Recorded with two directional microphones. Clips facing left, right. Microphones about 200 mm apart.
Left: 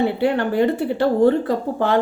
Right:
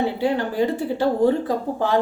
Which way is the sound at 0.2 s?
65° left (ahead or behind).